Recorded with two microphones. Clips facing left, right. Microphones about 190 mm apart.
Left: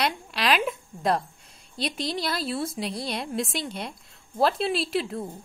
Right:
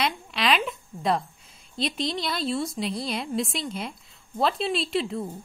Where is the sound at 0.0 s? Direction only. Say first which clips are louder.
Even; centre (ahead or behind).